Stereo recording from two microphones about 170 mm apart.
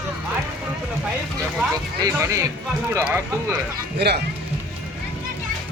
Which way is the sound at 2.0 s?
20° right (ahead or behind).